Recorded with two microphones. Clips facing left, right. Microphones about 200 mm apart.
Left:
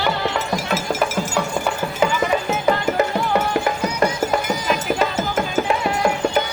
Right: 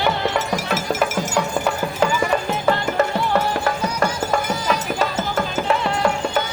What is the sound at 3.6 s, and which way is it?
Music, 15° left (ahead or behind).